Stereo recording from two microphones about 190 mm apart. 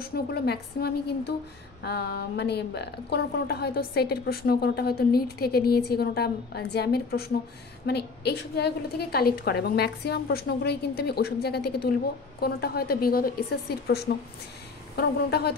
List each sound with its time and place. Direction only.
0.0 s a woman's voice: 55° left (ahead or behind)